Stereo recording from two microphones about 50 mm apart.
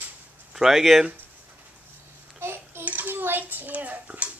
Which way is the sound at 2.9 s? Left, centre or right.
Right.